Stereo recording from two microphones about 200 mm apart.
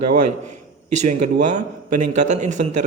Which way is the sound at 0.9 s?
35° right (ahead or behind).